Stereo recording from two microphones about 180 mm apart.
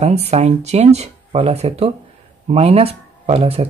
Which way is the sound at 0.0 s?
35° right (ahead or behind).